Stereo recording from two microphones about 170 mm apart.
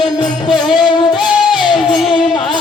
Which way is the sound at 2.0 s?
30° left (ahead or behind).